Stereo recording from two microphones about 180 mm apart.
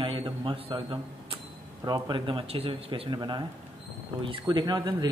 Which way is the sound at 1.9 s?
25° right (ahead or behind).